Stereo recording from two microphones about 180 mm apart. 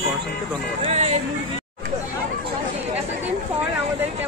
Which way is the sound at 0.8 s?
35° right (ahead or behind).